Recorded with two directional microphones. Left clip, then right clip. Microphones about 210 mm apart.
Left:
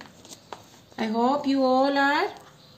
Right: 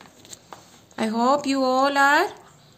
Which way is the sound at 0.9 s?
55° right (ahead or behind).